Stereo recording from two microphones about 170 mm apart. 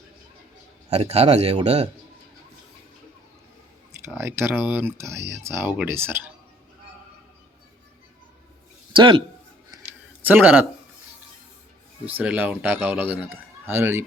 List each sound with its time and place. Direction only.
0.9 s speech: 40° right (ahead or behind)
4.0 s speech: 15° right (ahead or behind)
8.9 s a man's voice: 30° right (ahead or behind)
10.2 s speech: 10° right (ahead or behind)
12.0 s speech: 10° right (ahead or behind)